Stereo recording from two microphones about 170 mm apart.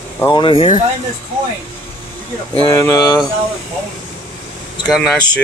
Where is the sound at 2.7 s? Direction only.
20° left (ahead or behind).